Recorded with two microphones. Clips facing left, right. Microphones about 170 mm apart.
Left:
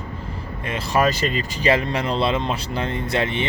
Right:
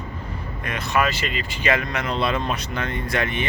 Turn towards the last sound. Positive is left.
turn(degrees=25)  # may be behind; listen again after turning